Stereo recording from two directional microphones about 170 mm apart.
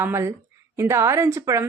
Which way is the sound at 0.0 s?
15° right (ahead or behind).